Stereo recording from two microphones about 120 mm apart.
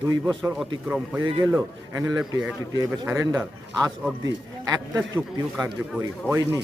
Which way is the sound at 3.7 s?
30° right (ahead or behind).